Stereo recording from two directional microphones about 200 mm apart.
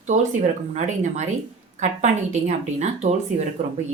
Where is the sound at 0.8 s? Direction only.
35° right (ahead or behind).